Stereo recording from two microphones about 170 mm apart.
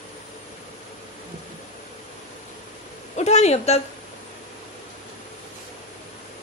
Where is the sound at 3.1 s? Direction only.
40° left (ahead or behind).